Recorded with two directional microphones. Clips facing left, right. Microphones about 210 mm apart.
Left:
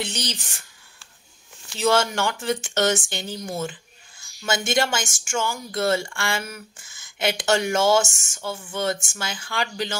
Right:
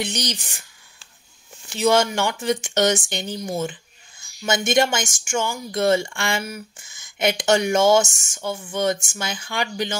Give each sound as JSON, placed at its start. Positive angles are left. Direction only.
{"t": 0.0, "sound": "speech", "side_deg": -15}
{"t": 1.7, "sound": "speech", "side_deg": -15}